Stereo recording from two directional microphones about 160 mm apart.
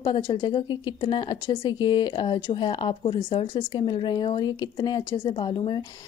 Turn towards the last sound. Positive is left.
turn(degrees=25)  # may be behind; listen again after turning